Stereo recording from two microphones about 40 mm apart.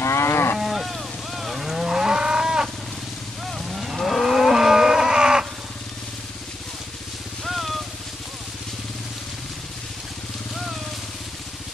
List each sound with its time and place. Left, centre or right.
0.1 s cattle: left
0.6 s moo: centre
3.4 s livestock: centre
7.4 s vehicle: centre